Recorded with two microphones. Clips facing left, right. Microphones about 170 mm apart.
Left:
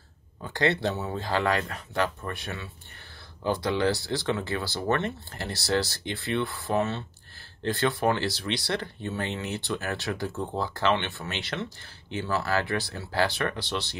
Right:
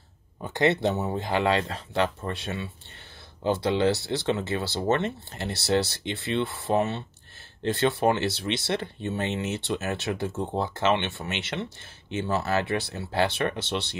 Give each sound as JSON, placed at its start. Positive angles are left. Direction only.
{"t": 0.4, "sound": "speech", "side_deg": -20}